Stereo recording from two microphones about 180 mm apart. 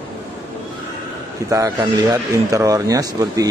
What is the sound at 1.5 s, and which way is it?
A man's voice, 20° right (ahead or behind).